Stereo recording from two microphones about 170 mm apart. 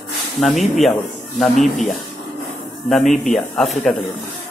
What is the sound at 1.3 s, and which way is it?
Speech, centre (ahead or behind).